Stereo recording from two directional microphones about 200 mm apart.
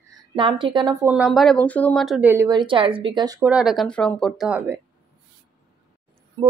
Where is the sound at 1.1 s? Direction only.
Centre (ahead or behind); by 3.3 s 25° right (ahead or behind).